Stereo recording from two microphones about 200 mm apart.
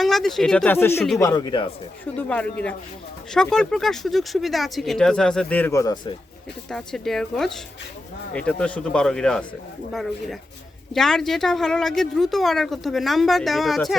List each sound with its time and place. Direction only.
0.0 s speech: centre (ahead or behind); by 1.7 s 20° left (ahead or behind)
2.1 s speech: 5° left (ahead or behind)
6.7 s speech: centre (ahead or behind)